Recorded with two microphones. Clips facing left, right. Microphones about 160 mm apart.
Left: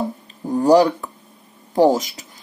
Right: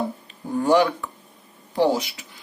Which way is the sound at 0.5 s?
40° left (ahead or behind).